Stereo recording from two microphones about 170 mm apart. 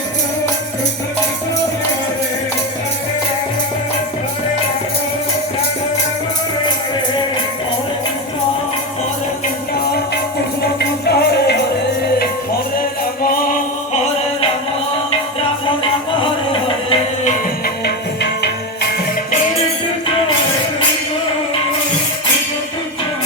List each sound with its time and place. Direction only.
10.8 s music: 75° left (ahead or behind)
15.4 s music: 30° left (ahead or behind)
17.8 s music: 75° left (ahead or behind)